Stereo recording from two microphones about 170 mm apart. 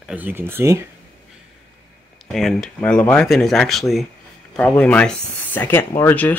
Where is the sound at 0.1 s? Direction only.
10° right (ahead or behind).